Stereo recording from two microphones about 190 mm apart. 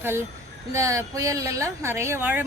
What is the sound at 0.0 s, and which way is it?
Speech, 10° right (ahead or behind).